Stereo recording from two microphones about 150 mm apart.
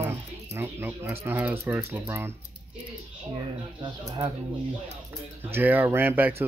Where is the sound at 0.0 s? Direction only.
15° right (ahead or behind).